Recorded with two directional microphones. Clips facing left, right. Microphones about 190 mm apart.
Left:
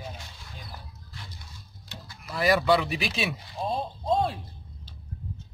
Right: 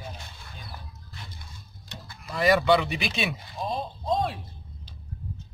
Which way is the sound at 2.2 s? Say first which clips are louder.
Right 1 dB; centre (ahead or behind).